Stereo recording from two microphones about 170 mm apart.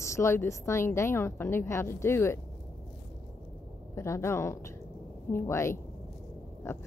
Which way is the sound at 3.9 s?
15° left (ahead or behind).